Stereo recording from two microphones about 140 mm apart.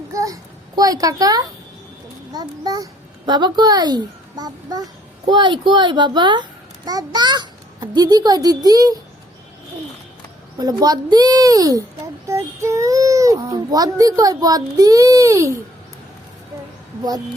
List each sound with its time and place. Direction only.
0.1 s a sound: 25° right (ahead or behind)
0.8 s a child's voice: 25° right (ahead or behind)
10.6 s a child's voice: 30° right (ahead or behind)